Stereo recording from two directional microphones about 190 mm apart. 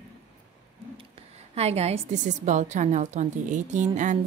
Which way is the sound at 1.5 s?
35° right (ahead or behind).